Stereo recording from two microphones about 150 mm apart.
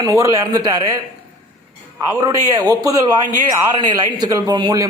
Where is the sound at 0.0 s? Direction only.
20° right (ahead or behind).